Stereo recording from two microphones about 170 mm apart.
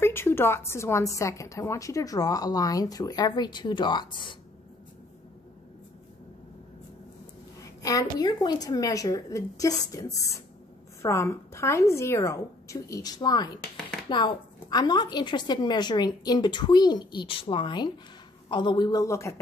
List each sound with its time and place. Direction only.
0.0 s a woman's voice: 15° left (ahead or behind)
7.8 s a woman's voice: 20° left (ahead or behind)